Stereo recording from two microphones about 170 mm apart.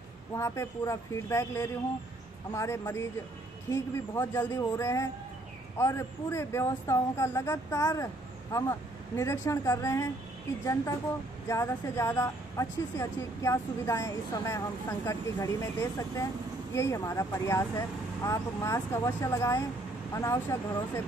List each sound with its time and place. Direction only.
0.4 s a woman's voice: 15° left (ahead or behind)